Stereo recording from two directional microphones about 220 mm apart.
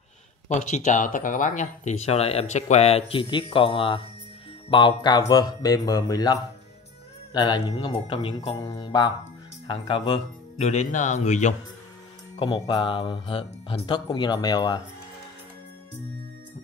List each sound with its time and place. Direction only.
0.5 s speech: 30° left (ahead or behind)
12.4 s speech: 20° left (ahead or behind)